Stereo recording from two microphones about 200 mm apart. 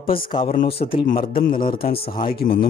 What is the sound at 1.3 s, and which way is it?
Speech, 45° left (ahead or behind).